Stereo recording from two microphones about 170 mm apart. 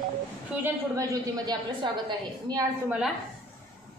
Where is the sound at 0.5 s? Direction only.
15° right (ahead or behind).